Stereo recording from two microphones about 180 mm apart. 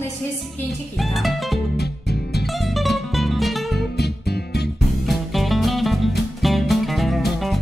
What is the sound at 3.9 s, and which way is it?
Music, 65° left (ahead or behind).